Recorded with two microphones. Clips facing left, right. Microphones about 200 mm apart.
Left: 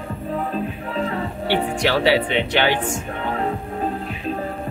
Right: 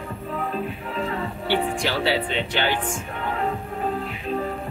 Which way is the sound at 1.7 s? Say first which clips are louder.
Left 5 dB; 70° left (ahead or behind).